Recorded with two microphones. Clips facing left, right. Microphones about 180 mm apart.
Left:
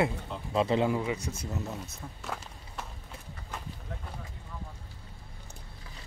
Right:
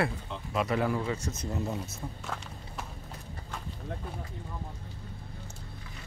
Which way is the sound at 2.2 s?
Centre (ahead or behind).